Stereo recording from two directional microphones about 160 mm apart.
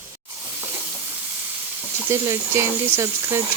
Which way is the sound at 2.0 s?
15° right (ahead or behind).